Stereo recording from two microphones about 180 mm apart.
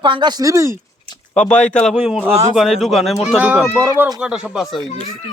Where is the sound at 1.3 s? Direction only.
5° left (ahead or behind).